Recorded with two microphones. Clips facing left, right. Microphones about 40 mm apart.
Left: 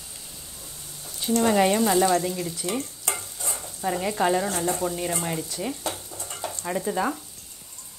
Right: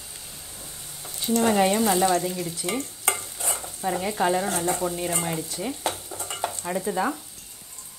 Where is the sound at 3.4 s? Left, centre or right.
Right.